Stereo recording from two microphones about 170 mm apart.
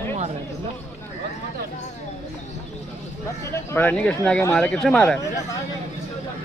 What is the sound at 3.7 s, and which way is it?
Speech, 10° left (ahead or behind).